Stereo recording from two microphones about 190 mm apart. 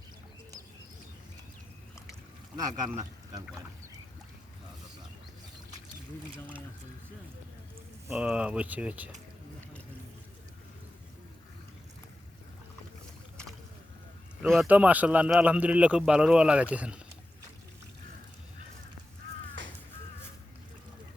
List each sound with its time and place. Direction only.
2.6 s speech: 20° right (ahead or behind)
8.1 s speech: 5° right (ahead or behind)
14.4 s a man's voice: centre (ahead or behind)
19.2 s a sound: 70° right (ahead or behind)